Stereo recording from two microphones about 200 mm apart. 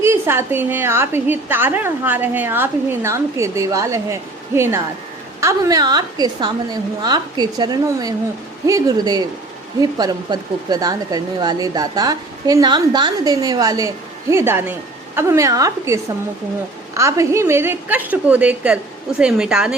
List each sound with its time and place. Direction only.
0.0 s a woman's voice: 10° right (ahead or behind)